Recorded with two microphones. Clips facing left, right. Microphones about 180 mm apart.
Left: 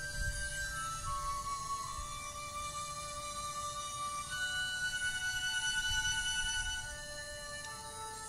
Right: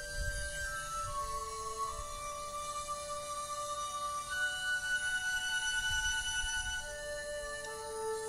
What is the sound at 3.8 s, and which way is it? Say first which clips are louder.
Music: right 3 dB; 55° right (ahead or behind).